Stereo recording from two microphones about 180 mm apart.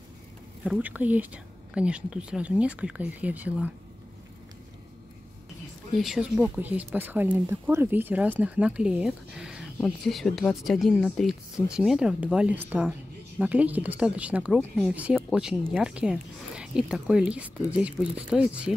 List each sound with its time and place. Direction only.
0.7 s speech: 10° right (ahead or behind)
5.9 s speech: centre (ahead or behind)